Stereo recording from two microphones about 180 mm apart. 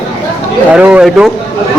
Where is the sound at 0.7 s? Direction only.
5° right (ahead or behind).